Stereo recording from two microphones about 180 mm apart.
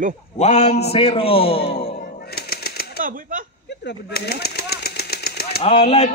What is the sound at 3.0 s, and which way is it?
Speech, 50° right (ahead or behind).